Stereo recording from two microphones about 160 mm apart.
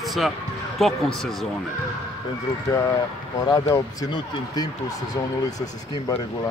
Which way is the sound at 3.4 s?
20° left (ahead or behind).